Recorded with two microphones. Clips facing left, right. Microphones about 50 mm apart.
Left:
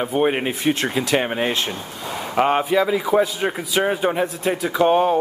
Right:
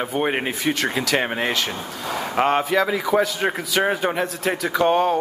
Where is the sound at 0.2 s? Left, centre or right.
Centre.